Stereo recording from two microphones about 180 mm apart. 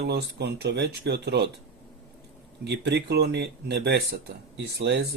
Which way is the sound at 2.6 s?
70° right (ahead or behind).